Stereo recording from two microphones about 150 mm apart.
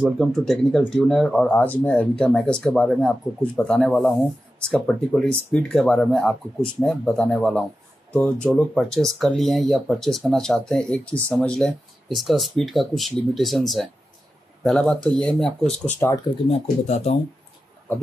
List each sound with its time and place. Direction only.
0.0 s speech: centre (ahead or behind)
16.3 s speech: 35° right (ahead or behind)
16.8 s speech: 50° left (ahead or behind)